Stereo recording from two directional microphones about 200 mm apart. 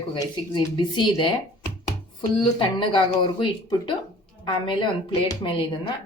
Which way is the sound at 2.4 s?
25° left (ahead or behind).